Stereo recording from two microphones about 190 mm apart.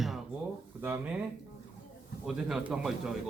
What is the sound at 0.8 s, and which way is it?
Speech, 5° right (ahead or behind).